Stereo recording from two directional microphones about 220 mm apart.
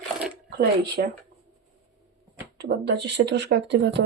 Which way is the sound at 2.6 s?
50° right (ahead or behind).